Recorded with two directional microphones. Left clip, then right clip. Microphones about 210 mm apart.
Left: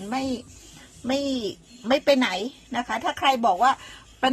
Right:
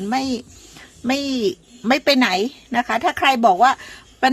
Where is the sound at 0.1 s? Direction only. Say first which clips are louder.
Right 5 dB; 40° right (ahead or behind).